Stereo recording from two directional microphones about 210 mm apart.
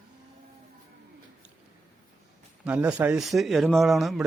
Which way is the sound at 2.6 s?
5° right (ahead or behind).